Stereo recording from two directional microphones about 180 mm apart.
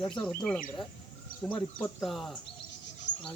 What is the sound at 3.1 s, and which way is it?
Insect, 80° left.